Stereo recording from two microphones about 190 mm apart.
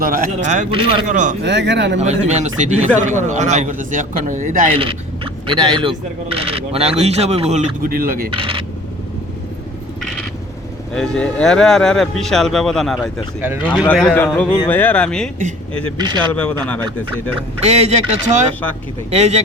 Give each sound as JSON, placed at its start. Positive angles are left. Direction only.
{"t": 0.0, "sound": "a man's voice", "side_deg": -45}
{"t": 0.7, "sound": "speech", "side_deg": -25}
{"t": 1.0, "sound": "speech", "side_deg": -40}
{"t": 1.5, "sound": "speech", "side_deg": -65}
{"t": 2.0, "sound": "speech", "side_deg": -35}
{"t": 4.7, "sound": "speech", "side_deg": -30}
{"t": 8.3, "sound": "speech", "side_deg": -30}
{"t": 10.9, "sound": "speech", "side_deg": 5}
{"t": 15.4, "sound": "speech", "side_deg": -35}
{"t": 16.3, "sound": "speech", "side_deg": 5}
{"t": 17.6, "sound": "speech", "side_deg": -35}